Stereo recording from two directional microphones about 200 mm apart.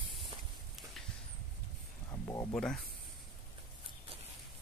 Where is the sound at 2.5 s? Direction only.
5° left (ahead or behind).